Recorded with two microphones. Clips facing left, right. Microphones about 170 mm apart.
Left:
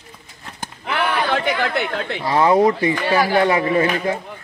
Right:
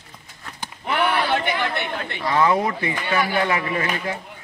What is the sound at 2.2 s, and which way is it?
Speech, 30° left (ahead or behind).